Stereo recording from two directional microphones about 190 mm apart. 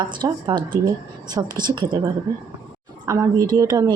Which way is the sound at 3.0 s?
20° right (ahead or behind).